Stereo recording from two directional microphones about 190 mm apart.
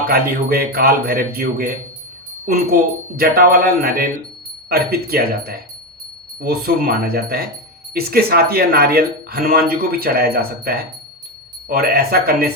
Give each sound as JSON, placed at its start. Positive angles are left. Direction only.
{"t": 0.1, "sound": "speech", "side_deg": -55}
{"t": 3.2, "sound": "speech", "side_deg": -55}